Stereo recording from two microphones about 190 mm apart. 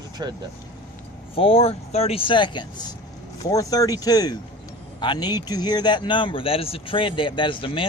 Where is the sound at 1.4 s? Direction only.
30° left (ahead or behind).